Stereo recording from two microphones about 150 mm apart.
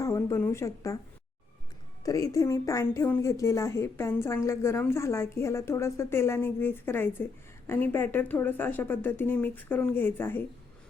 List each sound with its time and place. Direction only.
0.0 s speech: 20° left (ahead or behind)
2.0 s a woman's voice: 20° left (ahead or behind)